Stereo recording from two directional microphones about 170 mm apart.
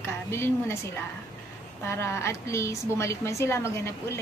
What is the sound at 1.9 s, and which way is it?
A woman's voice, 15° left (ahead or behind).